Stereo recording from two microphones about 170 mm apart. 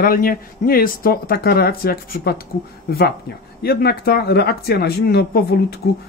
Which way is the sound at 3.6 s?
65° left (ahead or behind).